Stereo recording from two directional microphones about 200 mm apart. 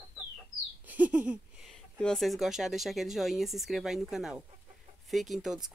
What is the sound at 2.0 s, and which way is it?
Speech, centre (ahead or behind).